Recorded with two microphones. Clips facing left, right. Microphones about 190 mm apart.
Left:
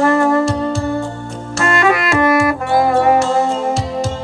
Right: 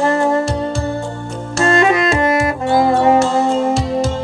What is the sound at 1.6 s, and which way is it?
Saxophone, 20° right (ahead or behind).